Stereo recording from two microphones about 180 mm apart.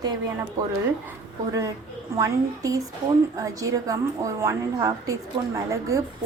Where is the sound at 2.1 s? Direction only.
15° right (ahead or behind).